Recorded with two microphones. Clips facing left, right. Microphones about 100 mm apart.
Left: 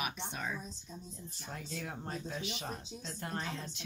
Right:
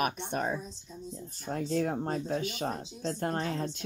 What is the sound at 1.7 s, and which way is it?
Speech, 45° right (ahead or behind).